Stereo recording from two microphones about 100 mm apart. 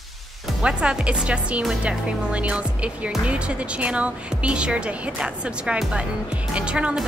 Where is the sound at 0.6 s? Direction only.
10° right (ahead or behind).